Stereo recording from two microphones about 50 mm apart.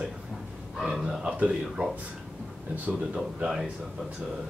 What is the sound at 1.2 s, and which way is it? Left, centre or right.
Speech, right.